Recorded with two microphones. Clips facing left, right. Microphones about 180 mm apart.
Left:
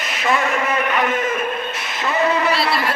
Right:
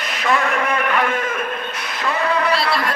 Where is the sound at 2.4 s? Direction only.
5° left (ahead or behind).